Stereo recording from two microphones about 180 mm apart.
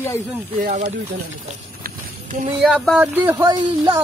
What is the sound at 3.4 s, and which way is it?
Speech, 25° right (ahead or behind).